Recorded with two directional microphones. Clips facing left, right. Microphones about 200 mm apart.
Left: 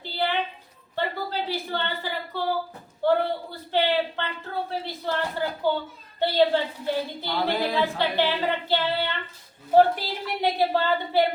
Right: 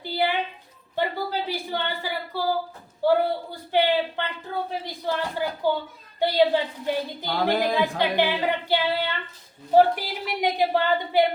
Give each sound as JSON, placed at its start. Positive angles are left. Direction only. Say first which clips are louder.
{"t": 0.0, "sound": "a sound", "louder": "right 3 dB", "side_deg": -10}
{"t": 0.9, "sound": "a woman's voice", "louder": "right 2 dB", "side_deg": -10}
{"t": 3.0, "sound": "female singing", "louder": "right 2 dB", "side_deg": -10}